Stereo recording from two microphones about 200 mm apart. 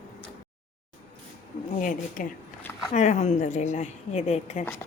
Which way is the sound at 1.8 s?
40° left (ahead or behind).